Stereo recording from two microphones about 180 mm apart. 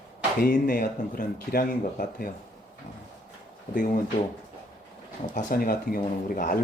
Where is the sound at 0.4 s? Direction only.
50° left (ahead or behind).